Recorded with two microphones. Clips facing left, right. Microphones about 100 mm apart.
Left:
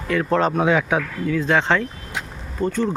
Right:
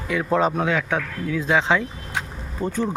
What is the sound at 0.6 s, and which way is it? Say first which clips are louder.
Speech: left 4 dB; 15° left (ahead or behind).